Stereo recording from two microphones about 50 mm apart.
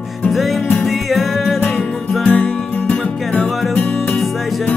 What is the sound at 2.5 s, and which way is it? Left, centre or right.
Music, left.